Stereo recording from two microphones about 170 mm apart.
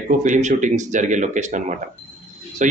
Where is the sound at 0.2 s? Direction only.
45° right (ahead or behind).